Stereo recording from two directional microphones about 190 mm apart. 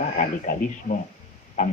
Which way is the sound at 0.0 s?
40° left (ahead or behind).